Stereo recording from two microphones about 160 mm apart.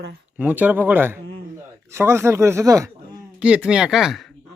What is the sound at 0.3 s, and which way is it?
Speech, 10° right (ahead or behind).